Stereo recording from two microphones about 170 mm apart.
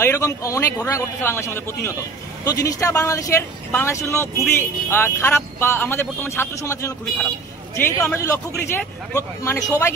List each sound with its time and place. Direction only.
0.0 s a man's voice: 20° left (ahead or behind)